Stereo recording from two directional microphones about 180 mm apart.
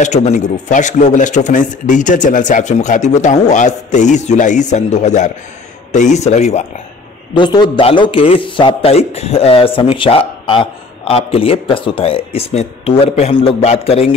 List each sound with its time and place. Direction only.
0.0 s a man's voice: 40° left (ahead or behind)
7.3 s a man's voice: 25° left (ahead or behind)